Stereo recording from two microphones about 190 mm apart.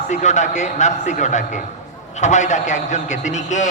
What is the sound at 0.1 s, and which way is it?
A man's voice, 40° left (ahead or behind).